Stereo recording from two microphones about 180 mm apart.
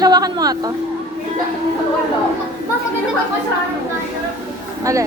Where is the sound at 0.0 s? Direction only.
20° right (ahead or behind).